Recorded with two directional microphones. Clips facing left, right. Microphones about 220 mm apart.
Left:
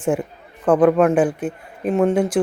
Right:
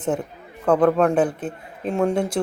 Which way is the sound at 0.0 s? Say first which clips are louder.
Left 3 dB; 10° left (ahead or behind).